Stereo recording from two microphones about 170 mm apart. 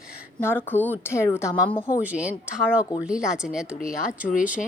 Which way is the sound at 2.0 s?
10° right (ahead or behind).